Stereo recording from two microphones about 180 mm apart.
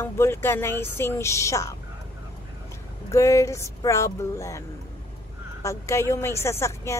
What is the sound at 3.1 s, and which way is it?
Speech, 15° left (ahead or behind).